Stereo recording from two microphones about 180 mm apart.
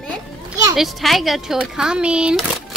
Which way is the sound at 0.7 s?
Centre (ahead or behind).